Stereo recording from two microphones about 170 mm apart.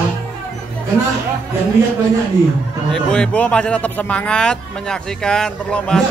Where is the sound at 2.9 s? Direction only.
5° left (ahead or behind).